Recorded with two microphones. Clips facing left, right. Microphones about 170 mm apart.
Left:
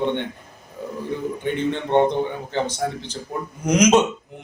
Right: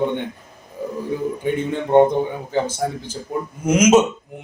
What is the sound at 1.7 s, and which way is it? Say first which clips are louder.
Speech: right 5 dB; 10° right (ahead or behind).